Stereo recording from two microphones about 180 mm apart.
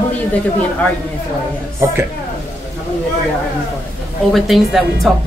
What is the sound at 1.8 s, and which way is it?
Speech, 15° right (ahead or behind).